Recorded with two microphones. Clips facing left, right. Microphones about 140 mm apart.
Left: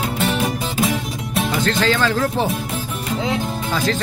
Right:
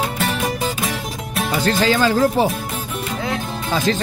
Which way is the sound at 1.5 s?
10° right (ahead or behind).